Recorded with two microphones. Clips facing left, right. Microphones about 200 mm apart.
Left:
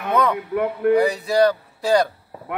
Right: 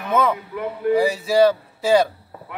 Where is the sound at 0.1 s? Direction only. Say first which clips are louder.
Even; centre (ahead or behind).